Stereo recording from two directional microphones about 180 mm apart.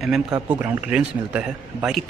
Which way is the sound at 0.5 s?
10° right (ahead or behind).